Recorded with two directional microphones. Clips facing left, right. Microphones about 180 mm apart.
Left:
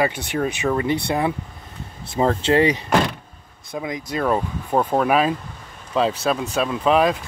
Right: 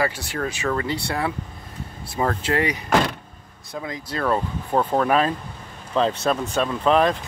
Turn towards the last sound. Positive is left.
turn(degrees=5)  # may be behind; listen again after turning